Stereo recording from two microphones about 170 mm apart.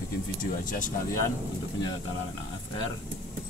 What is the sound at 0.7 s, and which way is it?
Speech, 50° left (ahead or behind).